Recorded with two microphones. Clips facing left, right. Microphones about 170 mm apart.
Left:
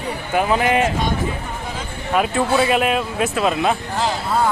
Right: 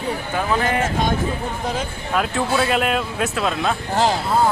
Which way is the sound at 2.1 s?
5° left (ahead or behind).